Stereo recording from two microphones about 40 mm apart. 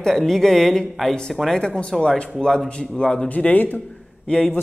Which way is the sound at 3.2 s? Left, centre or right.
Left.